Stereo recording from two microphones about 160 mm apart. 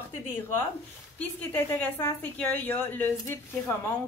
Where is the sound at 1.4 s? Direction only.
10° left (ahead or behind).